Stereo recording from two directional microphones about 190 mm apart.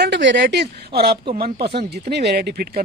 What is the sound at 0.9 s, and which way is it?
Speech, 55° right (ahead or behind).